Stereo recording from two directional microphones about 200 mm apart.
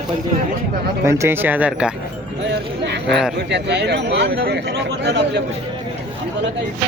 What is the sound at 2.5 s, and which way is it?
Speech, 60° right (ahead or behind).